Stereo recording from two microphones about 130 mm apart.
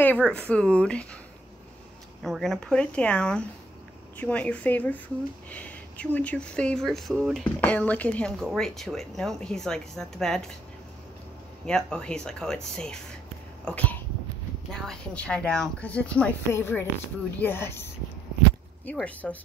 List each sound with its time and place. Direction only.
0.0 s speech: 10° left (ahead or behind)
2.2 s speech: centre (ahead or behind)
7.6 s a woman's voice: 10° left (ahead or behind)
11.6 s a woman's voice: 5° left (ahead or behind)